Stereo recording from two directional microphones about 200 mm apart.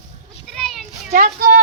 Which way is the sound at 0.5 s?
Centre (ahead or behind).